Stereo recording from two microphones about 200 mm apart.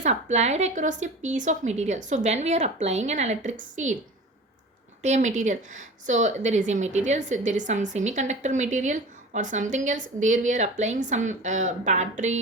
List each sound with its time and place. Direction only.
0.0 s a woman's voice: 35° right (ahead or behind)
5.0 s a woman's voice: 35° right (ahead or behind)